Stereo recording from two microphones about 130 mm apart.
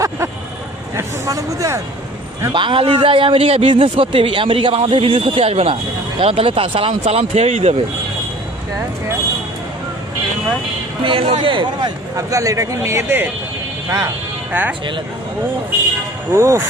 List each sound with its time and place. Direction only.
0.9 s speech: 25° right (ahead or behind)
2.5 s a man's voice: 40° right (ahead or behind); by 7.8 s 55° right (ahead or behind)
11.0 s a man's voice: 45° right (ahead or behind)
12.1 s speech: 25° right (ahead or behind)
14.5 s speech: 15° right (ahead or behind)
16.3 s speech: 20° right (ahead or behind)